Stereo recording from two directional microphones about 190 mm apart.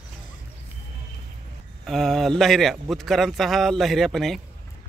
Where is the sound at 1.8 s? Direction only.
Centre (ahead or behind).